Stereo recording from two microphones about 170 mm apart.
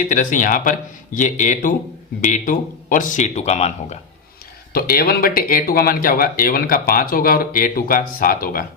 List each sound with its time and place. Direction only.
0.0 s speech: 50° left (ahead or behind)
4.7 s speech: 60° left (ahead or behind)